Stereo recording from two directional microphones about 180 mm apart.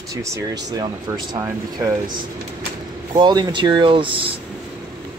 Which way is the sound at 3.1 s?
25° right (ahead or behind).